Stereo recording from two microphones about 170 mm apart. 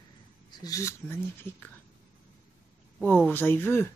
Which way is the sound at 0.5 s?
20° left (ahead or behind).